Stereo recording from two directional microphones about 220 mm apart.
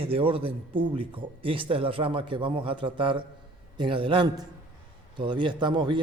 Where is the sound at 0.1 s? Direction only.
25° right (ahead or behind).